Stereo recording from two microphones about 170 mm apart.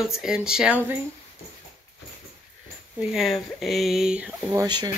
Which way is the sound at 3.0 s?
Centre (ahead or behind).